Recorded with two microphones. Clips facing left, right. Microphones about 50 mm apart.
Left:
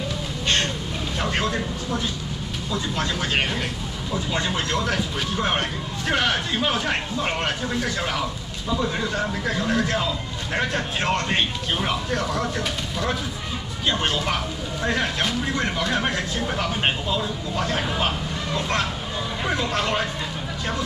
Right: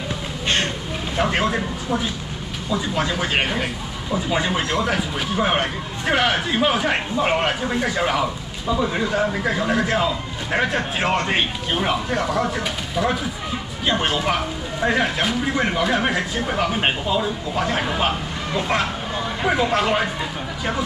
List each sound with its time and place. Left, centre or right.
1.1 s speech: centre